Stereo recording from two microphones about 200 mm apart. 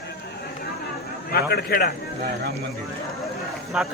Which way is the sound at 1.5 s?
50° left (ahead or behind).